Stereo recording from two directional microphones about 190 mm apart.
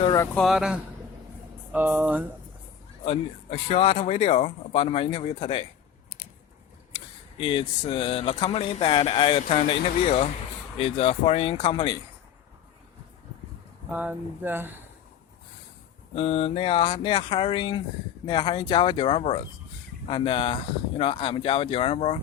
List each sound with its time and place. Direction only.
0.0 s speech: 20° left (ahead or behind)
0.3 s speech: centre (ahead or behind)
3.0 s speech: 35° left (ahead or behind)
6.9 s speech: 30° left (ahead or behind)
13.9 s speech: 10° right (ahead or behind)
16.1 s speech: 30° left (ahead or behind)